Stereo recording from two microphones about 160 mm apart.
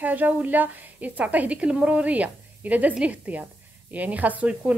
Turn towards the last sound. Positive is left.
turn(degrees=-10)  # may be behind; listen again after turning